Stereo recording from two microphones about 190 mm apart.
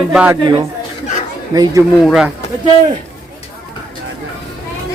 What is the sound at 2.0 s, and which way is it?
Speech, centre (ahead or behind).